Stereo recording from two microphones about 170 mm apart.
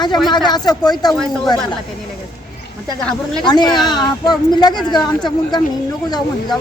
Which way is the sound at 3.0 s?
5° left (ahead or behind).